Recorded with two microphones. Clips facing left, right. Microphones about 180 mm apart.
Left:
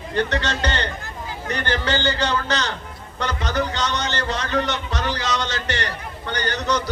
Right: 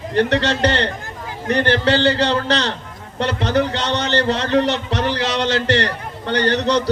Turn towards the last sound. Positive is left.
turn(degrees=-30)  # may be behind; listen again after turning